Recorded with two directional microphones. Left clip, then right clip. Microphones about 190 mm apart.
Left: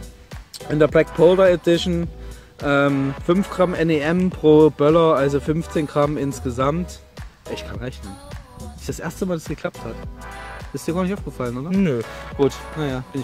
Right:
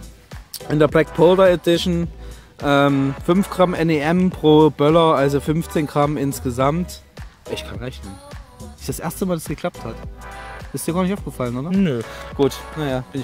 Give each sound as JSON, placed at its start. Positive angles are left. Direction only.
{"t": 0.7, "sound": "speech", "side_deg": -50}
{"t": 2.9, "sound": "speech", "side_deg": 0}
{"t": 3.4, "sound": "speech", "side_deg": -50}
{"t": 9.9, "sound": "speech", "side_deg": 0}
{"t": 10.7, "sound": "speech", "side_deg": -45}
{"t": 11.7, "sound": "speech", "side_deg": -5}
{"t": 12.7, "sound": "speech", "side_deg": -50}